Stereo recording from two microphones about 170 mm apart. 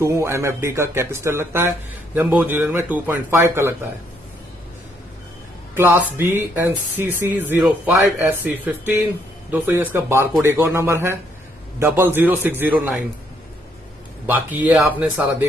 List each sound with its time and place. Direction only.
0.0 s speech: 15° right (ahead or behind)
5.8 s speech: 15° right (ahead or behind)
14.2 s speech: 10° right (ahead or behind)